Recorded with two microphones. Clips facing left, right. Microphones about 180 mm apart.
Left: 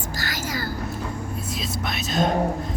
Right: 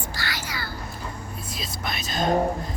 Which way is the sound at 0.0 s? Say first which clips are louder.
Left 3 dB; 45° left (ahead or behind).